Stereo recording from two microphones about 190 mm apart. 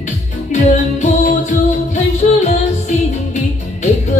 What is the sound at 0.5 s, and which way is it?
Music, 40° left (ahead or behind).